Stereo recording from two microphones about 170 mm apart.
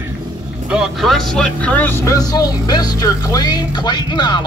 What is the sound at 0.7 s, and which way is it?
Speech, centre (ahead or behind).